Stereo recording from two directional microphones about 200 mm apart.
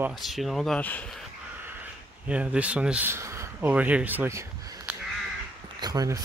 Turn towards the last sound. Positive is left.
turn(degrees=-20)  # may be behind; listen again after turning